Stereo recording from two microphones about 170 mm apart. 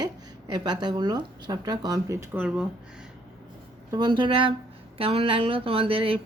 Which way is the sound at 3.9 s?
25° right (ahead or behind).